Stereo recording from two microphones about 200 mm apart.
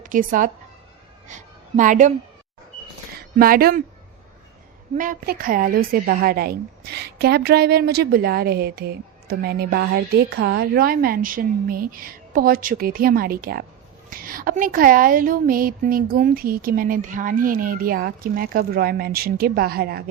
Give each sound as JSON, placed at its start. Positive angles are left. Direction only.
{"t": 0.0, "sound": "a woman's voice", "side_deg": -40}
{"t": 3.3, "sound": "a woman's voice", "side_deg": -45}
{"t": 4.9, "sound": "a woman's voice", "side_deg": -45}